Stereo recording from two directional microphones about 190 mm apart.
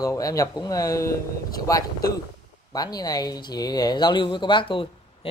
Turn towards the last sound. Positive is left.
turn(degrees=30)  # may be behind; listen again after turning